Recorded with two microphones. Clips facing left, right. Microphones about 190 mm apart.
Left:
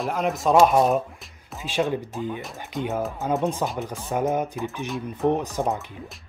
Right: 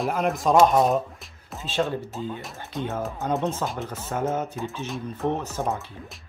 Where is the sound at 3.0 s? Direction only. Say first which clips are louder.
Even; centre (ahead or behind).